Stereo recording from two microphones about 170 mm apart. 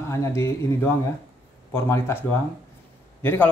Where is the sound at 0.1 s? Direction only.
15° left (ahead or behind).